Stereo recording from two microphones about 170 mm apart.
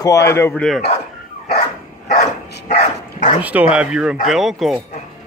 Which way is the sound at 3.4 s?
10° right (ahead or behind).